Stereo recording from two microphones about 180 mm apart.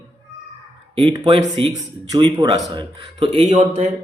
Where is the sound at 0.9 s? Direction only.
30° right (ahead or behind).